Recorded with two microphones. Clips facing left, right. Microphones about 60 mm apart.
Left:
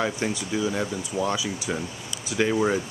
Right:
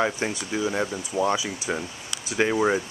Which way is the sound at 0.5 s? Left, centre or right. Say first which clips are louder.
Right 1 dB; centre.